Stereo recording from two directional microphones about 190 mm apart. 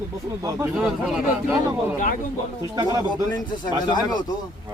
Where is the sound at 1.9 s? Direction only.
45° left (ahead or behind).